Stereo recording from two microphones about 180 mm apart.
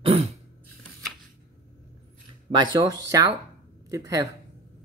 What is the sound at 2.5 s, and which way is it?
Speech, 25° right (ahead or behind).